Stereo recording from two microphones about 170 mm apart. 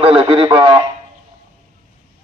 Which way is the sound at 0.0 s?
35° right (ahead or behind).